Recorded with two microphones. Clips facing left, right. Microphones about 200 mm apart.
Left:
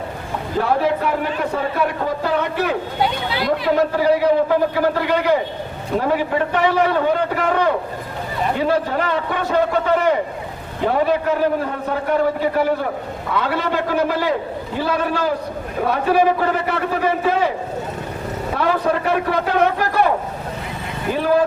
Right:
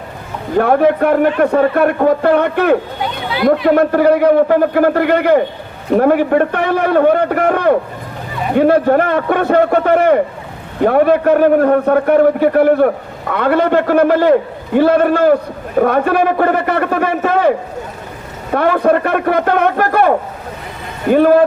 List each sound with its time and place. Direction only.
0.6 s a man's voice: 55° right (ahead or behind)
18.5 s a man's voice: 60° right (ahead or behind)
21.1 s a man's voice: 55° right (ahead or behind)